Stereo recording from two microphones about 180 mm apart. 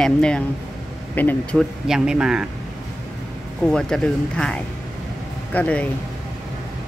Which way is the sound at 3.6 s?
5° left (ahead or behind).